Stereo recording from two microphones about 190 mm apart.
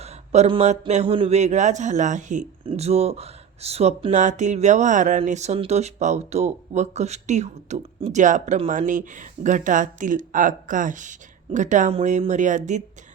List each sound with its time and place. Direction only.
0.0 s speech: 35° right (ahead or behind)